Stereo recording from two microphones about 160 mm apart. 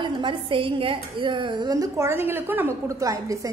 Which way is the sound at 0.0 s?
30° right (ahead or behind).